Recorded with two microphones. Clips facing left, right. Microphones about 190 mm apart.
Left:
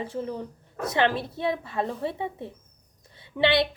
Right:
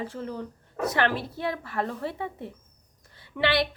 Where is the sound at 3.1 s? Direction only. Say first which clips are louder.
Left 3 dB; 20° left (ahead or behind).